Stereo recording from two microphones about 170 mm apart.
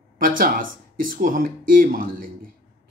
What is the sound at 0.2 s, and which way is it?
A man's voice, 55° right (ahead or behind).